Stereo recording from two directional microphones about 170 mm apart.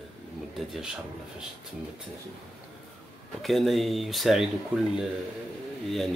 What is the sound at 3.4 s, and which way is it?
Speech, centre (ahead or behind).